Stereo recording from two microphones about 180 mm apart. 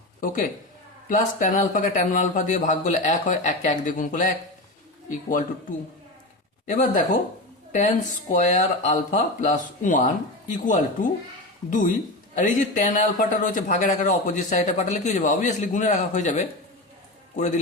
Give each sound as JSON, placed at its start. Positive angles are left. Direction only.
{"t": 1.0, "sound": "a man's voice", "side_deg": 45}
{"t": 6.7, "sound": "a man's voice", "side_deg": 45}
{"t": 12.3, "sound": "a man's voice", "side_deg": 45}